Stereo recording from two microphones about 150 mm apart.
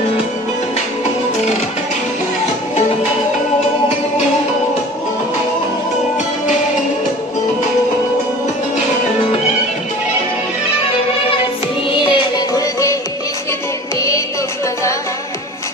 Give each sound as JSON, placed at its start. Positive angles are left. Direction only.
{"t": 12.0, "sound": "music", "side_deg": 30}